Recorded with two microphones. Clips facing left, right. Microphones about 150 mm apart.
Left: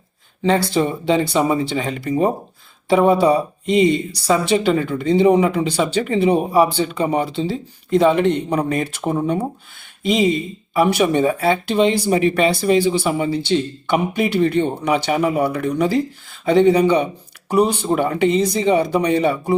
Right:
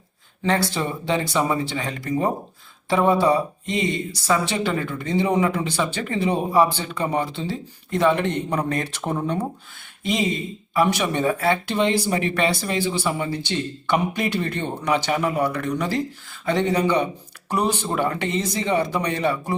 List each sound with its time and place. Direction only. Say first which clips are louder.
0.4 s speech: left 5 dB; 20° left (ahead or behind)